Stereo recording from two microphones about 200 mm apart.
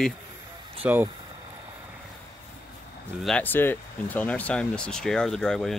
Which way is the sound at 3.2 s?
5° left (ahead or behind).